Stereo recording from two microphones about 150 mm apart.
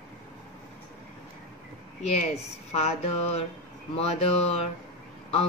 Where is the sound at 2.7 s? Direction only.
45° left (ahead or behind).